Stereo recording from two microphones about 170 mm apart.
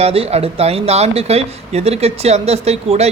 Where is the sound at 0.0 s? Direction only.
35° right (ahead or behind).